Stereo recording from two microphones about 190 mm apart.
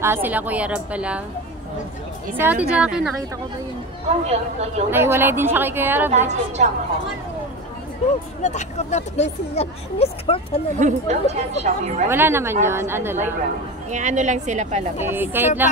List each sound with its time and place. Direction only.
0.0 s a woman's voice: 10° right (ahead or behind)
2.3 s a woman's voice: 10° right (ahead or behind)
4.3 s a woman's voice: 35° right (ahead or behind)
4.9 s a woman's voice: 10° right (ahead or behind)
6.0 s a woman's voice: 35° right (ahead or behind)
8.4 s speech: 35° left (ahead or behind)
10.8 s a woman's voice: 35° right (ahead or behind)
12.1 s a woman's voice: 10° right (ahead or behind)
13.8 s a woman's voice: 40° right (ahead or behind)
15.0 s a woman's voice: 10° right (ahead or behind)